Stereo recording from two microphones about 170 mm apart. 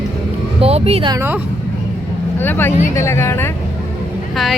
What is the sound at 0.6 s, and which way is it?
Speech, 35° right (ahead or behind).